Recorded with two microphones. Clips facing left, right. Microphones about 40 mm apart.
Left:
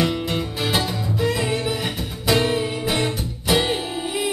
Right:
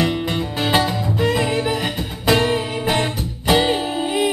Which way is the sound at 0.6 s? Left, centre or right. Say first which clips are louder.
Right 7 dB; right.